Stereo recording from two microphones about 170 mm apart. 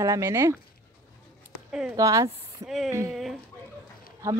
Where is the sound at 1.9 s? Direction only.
20° right (ahead or behind).